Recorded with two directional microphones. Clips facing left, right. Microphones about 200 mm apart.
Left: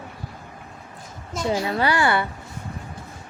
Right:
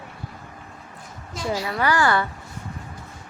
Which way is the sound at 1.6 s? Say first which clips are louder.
Right 2 dB; 25° left (ahead or behind).